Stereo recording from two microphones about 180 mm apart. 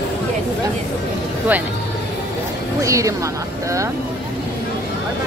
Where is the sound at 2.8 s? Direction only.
15° right (ahead or behind).